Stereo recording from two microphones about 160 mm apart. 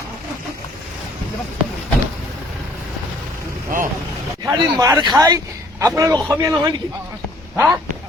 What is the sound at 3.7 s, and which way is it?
Speech, 60° right (ahead or behind).